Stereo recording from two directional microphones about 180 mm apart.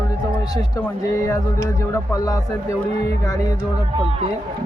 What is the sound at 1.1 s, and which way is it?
Speech, 15° left (ahead or behind).